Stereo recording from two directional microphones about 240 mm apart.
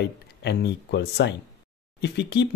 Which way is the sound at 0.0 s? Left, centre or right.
Left.